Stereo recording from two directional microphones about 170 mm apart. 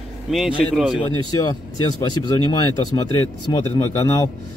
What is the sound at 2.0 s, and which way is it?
Speech, 25° left (ahead or behind).